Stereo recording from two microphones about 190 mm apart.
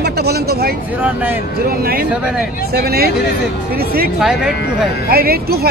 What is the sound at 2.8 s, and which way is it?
Speech, 55° right (ahead or behind).